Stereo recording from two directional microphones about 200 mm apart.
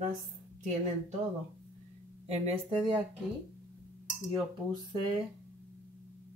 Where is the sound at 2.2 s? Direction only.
35° right (ahead or behind).